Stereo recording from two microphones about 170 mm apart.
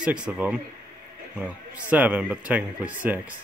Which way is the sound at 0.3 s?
5° right (ahead or behind).